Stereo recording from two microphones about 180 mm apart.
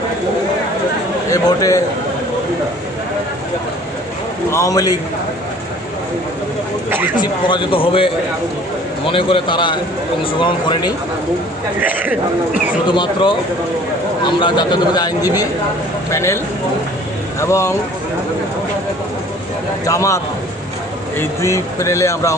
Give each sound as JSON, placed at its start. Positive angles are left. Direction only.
{"t": 1.3, "sound": "a man's voice", "side_deg": 20}
{"t": 4.5, "sound": "a man's voice", "side_deg": 20}
{"t": 7.2, "sound": "a man's voice", "side_deg": 25}
{"t": 9.1, "sound": "a man's voice", "side_deg": 30}
{"t": 11.8, "sound": "speech", "side_deg": -10}
{"t": 12.9, "sound": "a man's voice", "side_deg": 25}
{"t": 17.4, "sound": "speech", "side_deg": 15}
{"t": 19.8, "sound": "speech", "side_deg": 15}